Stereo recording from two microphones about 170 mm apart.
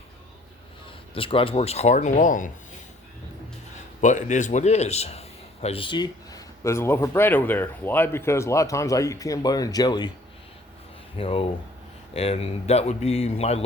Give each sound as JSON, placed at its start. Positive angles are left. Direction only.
{"t": 1.1, "sound": "speech", "side_deg": 30}
{"t": 3.8, "sound": "a man's voice", "side_deg": 45}
{"t": 11.2, "sound": "speech", "side_deg": 35}